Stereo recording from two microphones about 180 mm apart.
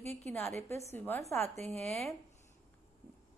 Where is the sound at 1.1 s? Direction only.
10° left (ahead or behind).